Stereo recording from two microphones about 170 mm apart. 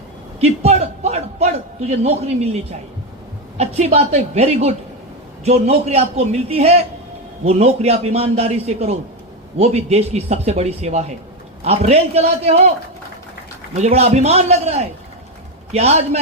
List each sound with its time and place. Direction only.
0.4 s a man's voice: 40° right (ahead or behind)
3.6 s a man's voice: 40° right (ahead or behind)
13.7 s a man's voice: 40° right (ahead or behind)